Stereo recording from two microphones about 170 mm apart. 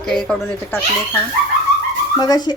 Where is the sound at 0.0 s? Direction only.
5° left (ahead or behind).